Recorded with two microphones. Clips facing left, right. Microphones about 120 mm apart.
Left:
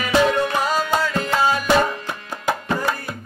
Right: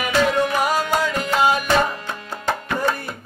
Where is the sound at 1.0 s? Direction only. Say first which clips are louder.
Right 1 dB; 15° right (ahead or behind).